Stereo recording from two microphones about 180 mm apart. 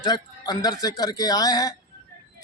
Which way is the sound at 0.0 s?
20° left (ahead or behind).